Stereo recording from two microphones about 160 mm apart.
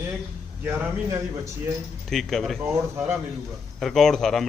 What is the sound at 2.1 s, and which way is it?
Speech, centre (ahead or behind).